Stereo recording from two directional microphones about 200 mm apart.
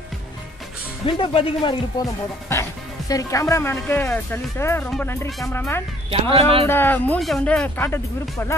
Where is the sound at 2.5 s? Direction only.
15° left (ahead or behind).